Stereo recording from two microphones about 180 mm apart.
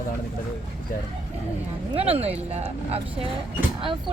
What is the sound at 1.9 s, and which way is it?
Speech, 35° right (ahead or behind).